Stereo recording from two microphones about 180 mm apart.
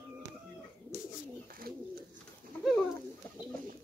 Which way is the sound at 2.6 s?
5° left (ahead or behind).